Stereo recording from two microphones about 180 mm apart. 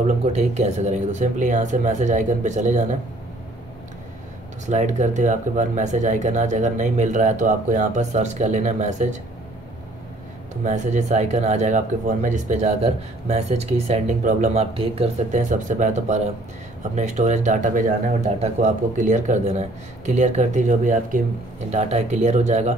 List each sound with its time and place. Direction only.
0.0 s speech: 40° right (ahead or behind)
4.6 s speech: 40° right (ahead or behind)
10.5 s speech: 40° right (ahead or behind)
15.5 s speech: 45° right (ahead or behind)